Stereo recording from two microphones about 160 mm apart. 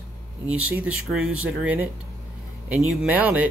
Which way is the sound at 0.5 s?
10° right (ahead or behind).